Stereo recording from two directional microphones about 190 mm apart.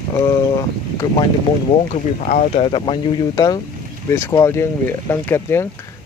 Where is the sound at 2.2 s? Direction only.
45° left (ahead or behind).